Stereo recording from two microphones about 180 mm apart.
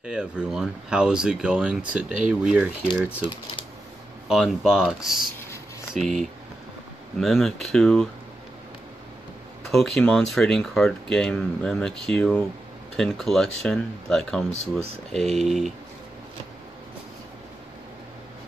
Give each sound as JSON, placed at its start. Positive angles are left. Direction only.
{"t": 0.0, "sound": "speech", "side_deg": -5}
{"t": 4.3, "sound": "speech", "side_deg": 0}
{"t": 9.7, "sound": "speech", "side_deg": 0}